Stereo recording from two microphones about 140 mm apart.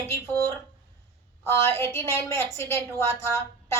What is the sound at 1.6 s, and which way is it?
Speech, 15° left (ahead or behind).